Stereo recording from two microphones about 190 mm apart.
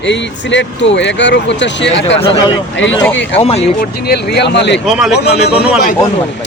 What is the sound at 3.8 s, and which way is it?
Speech, 55° left (ahead or behind).